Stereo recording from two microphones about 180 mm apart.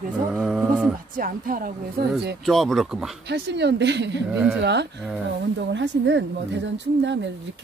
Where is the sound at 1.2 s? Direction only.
50° right (ahead or behind).